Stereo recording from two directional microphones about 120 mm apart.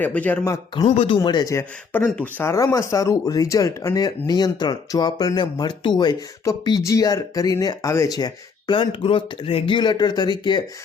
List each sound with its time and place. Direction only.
0.0 s a man's voice: 15° left (ahead or behind)
1.0 s speech: 40° left (ahead or behind)
1.5 s a man's voice: 20° left (ahead or behind)
2.4 s speech: 20° left (ahead or behind); by 10.6 s 35° left (ahead or behind)